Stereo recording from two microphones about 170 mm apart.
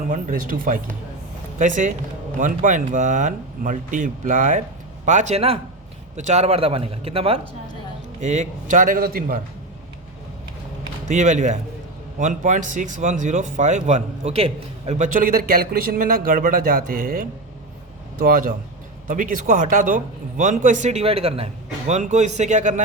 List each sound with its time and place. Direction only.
0.1 s a man's voice: 55° right (ahead or behind)
11.1 s a man's voice: 45° right (ahead or behind)